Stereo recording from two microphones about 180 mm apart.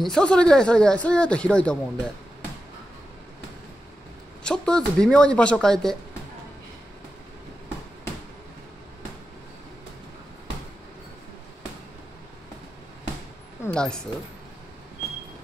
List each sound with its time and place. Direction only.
0.0 s speech: 5° left (ahead or behind)
4.4 s speech: 5° left (ahead or behind)
13.7 s speech: 5° left (ahead or behind)